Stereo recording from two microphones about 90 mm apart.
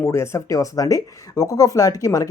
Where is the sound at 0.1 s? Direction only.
35° left (ahead or behind).